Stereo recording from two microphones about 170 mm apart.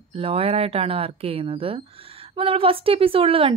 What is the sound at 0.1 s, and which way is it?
Speech, 35° right (ahead or behind).